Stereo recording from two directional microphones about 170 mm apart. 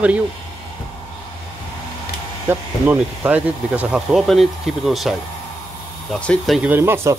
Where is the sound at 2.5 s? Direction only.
10° right (ahead or behind).